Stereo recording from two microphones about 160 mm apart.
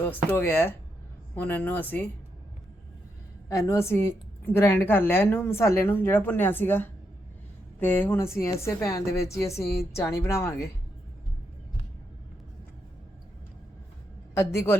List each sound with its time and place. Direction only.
0.3 s a woman's voice: 15° left (ahead or behind)
3.5 s a woman's voice: 20° left (ahead or behind)
14.3 s a woman's voice: 15° left (ahead or behind)